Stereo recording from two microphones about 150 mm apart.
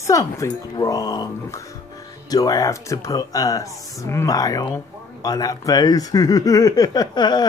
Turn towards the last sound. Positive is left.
turn(degrees=30)  # may be behind; listen again after turning